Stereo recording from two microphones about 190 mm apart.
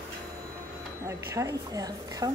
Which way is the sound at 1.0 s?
15° right (ahead or behind).